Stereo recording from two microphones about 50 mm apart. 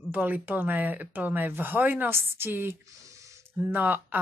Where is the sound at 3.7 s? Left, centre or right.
Right.